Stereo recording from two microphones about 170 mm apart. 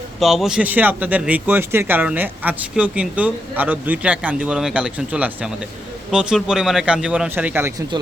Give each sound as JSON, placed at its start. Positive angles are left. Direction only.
{"t": 0.2, "sound": "speech", "side_deg": 0}